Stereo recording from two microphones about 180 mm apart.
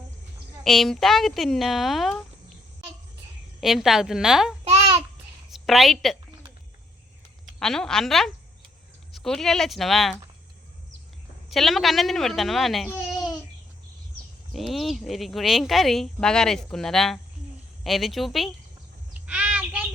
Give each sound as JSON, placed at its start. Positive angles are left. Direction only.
{"t": 0.6, "sound": "speech", "side_deg": 0}
{"t": 3.6, "sound": "speech", "side_deg": 0}
{"t": 4.6, "sound": "babbling", "side_deg": -35}
{"t": 5.5, "sound": "a woman's voice", "side_deg": 0}
{"t": 7.6, "sound": "speech", "side_deg": 5}
{"t": 11.4, "sound": "speech", "side_deg": 0}
{"t": 14.5, "sound": "speech", "side_deg": 0}
{"t": 19.2, "sound": "child singing", "side_deg": -5}